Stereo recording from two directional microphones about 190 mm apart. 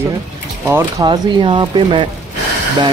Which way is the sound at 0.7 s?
15° right (ahead or behind).